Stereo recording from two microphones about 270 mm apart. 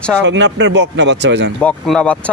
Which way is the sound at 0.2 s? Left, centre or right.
Right.